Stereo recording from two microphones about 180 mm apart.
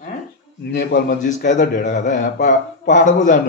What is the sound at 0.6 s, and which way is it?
Speech, 65° left (ahead or behind).